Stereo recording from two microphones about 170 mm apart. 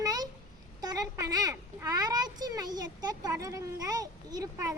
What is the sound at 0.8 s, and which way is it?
A child's voice, 20° right (ahead or behind).